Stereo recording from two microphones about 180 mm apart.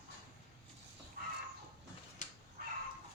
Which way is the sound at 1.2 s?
55° right (ahead or behind).